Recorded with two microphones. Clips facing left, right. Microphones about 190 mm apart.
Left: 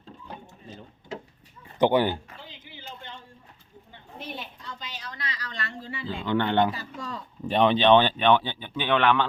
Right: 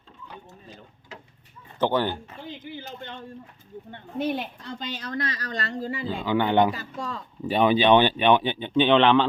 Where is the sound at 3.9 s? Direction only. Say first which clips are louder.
Right 11 dB; 55° right (ahead or behind); by 6.1 s 40° right (ahead or behind).